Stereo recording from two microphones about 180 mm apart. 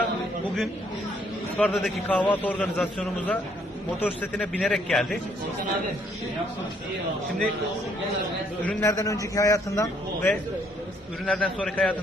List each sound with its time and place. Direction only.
1.5 s a man's voice: 5° left (ahead or behind)
8.6 s a man's voice: 20° left (ahead or behind)
11.3 s a man's voice: 5° left (ahead or behind)